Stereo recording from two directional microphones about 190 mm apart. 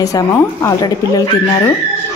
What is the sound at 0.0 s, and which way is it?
Speech, 15° left (ahead or behind).